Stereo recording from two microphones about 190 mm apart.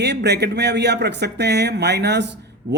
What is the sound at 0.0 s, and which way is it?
Speech, 65° right (ahead or behind).